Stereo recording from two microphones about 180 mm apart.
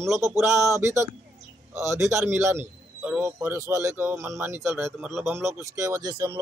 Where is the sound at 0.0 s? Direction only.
15° right (ahead or behind).